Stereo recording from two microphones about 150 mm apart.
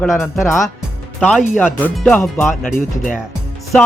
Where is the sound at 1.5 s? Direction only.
10° left (ahead or behind).